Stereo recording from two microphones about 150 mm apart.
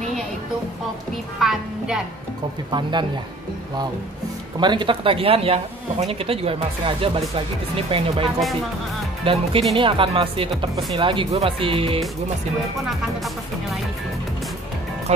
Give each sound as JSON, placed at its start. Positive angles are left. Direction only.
{"t": 1.4, "sound": "music", "side_deg": -5}
{"t": 2.7, "sound": "speech", "side_deg": -30}
{"t": 4.6, "sound": "speech", "side_deg": -30}
{"t": 15.1, "sound": "speech", "side_deg": -45}